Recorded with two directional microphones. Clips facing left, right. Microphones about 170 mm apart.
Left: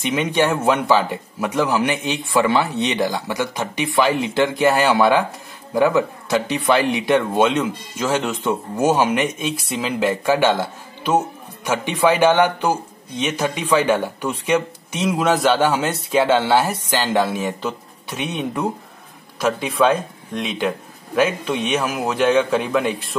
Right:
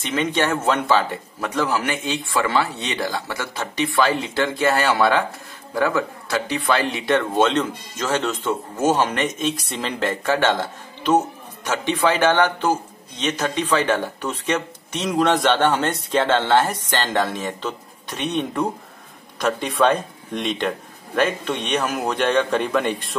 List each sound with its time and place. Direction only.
0.0 s speech: 10° left (ahead or behind)